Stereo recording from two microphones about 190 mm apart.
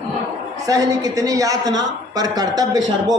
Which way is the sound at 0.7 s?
20° right (ahead or behind).